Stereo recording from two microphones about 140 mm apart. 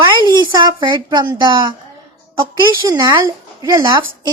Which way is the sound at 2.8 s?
30° right (ahead or behind).